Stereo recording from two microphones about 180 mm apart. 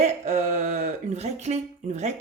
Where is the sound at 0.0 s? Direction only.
40° right (ahead or behind).